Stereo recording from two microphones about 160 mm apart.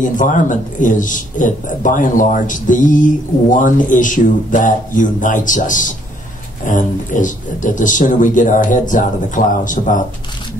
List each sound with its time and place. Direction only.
0.0 s a man's voice: 55° left (ahead or behind)